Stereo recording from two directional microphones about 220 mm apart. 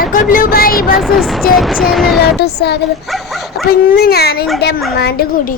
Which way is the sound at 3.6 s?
45° left (ahead or behind).